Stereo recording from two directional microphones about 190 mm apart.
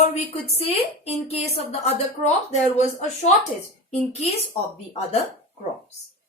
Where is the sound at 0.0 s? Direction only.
35° left (ahead or behind).